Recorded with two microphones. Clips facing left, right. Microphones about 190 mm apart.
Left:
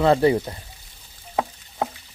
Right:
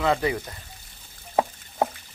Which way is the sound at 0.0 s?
30° left (ahead or behind).